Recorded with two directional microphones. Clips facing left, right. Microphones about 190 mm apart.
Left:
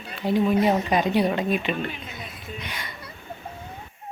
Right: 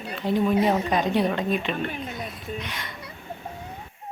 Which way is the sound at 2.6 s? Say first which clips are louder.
Right 1 dB; centre (ahead or behind).